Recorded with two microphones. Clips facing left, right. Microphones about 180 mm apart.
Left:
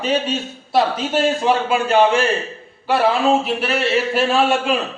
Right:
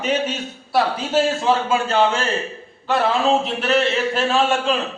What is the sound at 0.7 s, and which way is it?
A man's voice, 20° left (ahead or behind).